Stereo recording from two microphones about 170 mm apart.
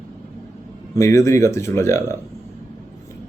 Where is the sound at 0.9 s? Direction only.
15° left (ahead or behind).